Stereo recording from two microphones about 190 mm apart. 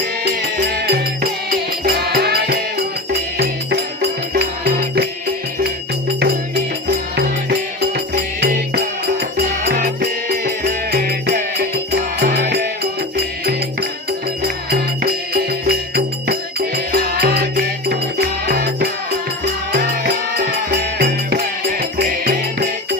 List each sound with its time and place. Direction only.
0.3 s music: 55° right (ahead or behind)
7.8 s music: 55° right (ahead or behind)
15.0 s music: 55° right (ahead or behind)
21.0 s music: 55° right (ahead or behind)